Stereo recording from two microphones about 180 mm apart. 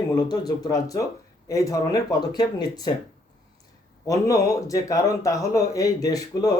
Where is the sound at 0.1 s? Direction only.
20° left (ahead or behind).